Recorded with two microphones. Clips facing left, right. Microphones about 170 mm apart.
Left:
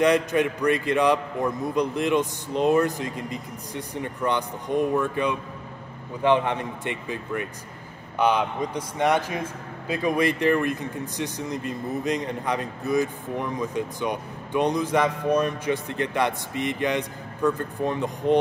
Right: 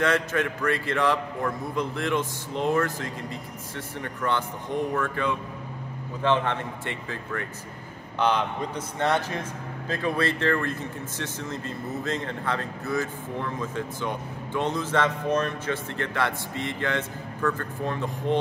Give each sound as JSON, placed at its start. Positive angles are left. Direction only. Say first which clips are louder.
{"t": 0.0, "sound": "a man's voice", "louder": "left 4 dB", "side_deg": 15}